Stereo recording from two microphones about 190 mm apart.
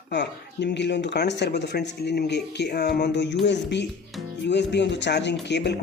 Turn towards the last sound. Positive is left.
turn(degrees=65)  # may be behind; listen again after turning